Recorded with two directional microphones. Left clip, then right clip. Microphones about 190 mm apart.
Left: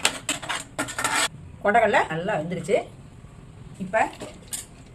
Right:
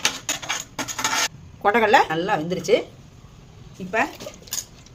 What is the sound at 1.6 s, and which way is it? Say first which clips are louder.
A woman's voice: right 3 dB; 55° right (ahead or behind).